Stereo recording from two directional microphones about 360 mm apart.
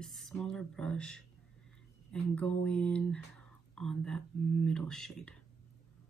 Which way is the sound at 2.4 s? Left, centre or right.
Centre.